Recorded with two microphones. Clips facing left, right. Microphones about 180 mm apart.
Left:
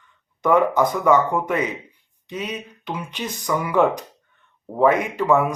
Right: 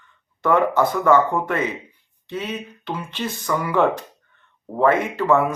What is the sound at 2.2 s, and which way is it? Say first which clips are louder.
Speech: right 1 dB; 15° left (ahead or behind).